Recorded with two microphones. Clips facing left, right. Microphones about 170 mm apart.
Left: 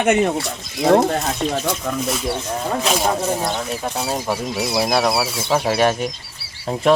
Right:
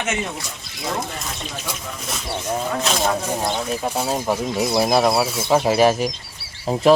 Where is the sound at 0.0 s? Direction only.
55° left (ahead or behind).